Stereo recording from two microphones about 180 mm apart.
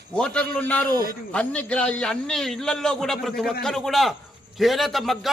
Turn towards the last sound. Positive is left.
turn(degrees=0)  # may be behind; listen again after turning